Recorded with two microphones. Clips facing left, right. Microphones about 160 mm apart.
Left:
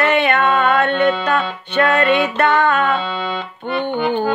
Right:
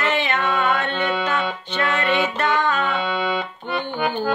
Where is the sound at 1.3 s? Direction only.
60° left (ahead or behind).